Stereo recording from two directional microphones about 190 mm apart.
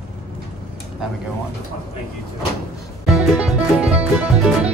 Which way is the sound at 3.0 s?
Centre (ahead or behind).